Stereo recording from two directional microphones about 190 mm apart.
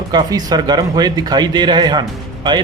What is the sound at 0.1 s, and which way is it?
A man's voice, 20° right (ahead or behind).